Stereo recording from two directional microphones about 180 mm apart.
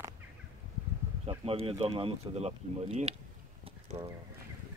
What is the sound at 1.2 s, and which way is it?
Speech, 30° right (ahead or behind).